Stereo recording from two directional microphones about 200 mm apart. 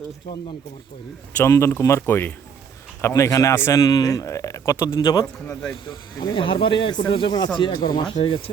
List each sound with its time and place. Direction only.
1.4 s a man's voice: 15° left (ahead or behind)
6.1 s speech: 25° left (ahead or behind)